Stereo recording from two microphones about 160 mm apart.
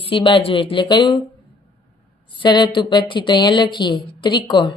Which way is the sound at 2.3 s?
30° left (ahead or behind).